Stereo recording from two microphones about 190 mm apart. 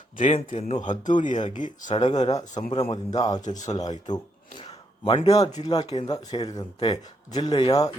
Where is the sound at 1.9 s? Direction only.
20° left (ahead or behind).